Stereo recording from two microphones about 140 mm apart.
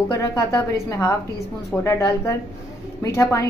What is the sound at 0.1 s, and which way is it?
A woman's voice, 20° left (ahead or behind).